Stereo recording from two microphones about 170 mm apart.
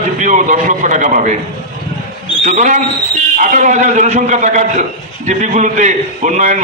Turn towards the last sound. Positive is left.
turn(degrees=-50)  # may be behind; listen again after turning